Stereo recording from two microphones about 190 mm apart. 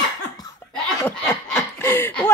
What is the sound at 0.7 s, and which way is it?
Laughter, 5° left (ahead or behind).